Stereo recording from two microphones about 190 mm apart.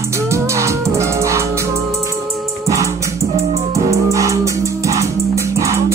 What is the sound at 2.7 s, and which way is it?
Music, 15° right (ahead or behind).